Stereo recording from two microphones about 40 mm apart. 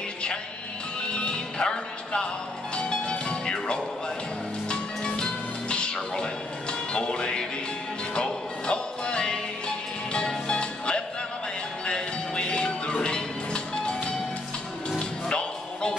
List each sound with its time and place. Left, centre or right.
1.1 s music: left